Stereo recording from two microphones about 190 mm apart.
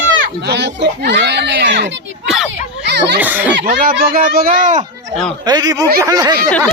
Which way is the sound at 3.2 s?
10° right (ahead or behind).